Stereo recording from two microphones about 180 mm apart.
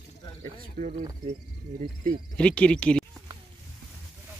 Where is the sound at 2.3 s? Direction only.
5° left (ahead or behind).